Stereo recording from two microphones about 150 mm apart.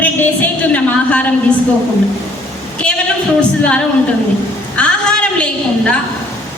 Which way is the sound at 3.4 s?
10° left (ahead or behind).